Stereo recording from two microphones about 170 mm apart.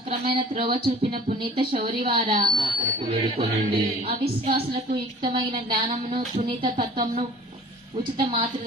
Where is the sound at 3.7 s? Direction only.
35° right (ahead or behind).